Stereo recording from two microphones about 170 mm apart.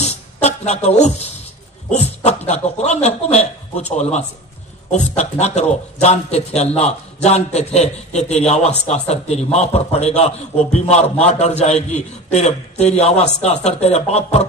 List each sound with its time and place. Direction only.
0.0 s music: 40° left (ahead or behind)
1.9 s a man's voice: 40° left (ahead or behind)